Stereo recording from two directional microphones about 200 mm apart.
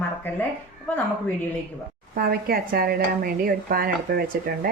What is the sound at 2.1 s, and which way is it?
Speech, 50° right (ahead or behind).